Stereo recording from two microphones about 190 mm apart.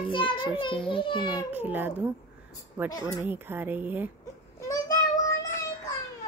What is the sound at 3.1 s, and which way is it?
Speech, 10° right (ahead or behind).